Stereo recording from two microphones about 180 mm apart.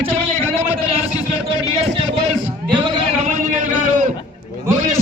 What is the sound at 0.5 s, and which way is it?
Speech, 10° right (ahead or behind).